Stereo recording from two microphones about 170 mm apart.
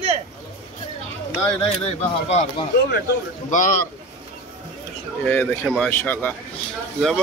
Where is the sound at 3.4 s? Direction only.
50° left (ahead or behind).